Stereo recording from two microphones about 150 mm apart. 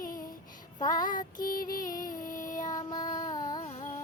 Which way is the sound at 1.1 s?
60° left (ahead or behind).